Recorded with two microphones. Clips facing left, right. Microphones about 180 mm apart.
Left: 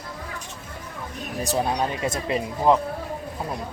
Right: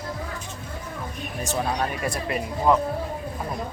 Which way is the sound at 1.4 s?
35° left (ahead or behind).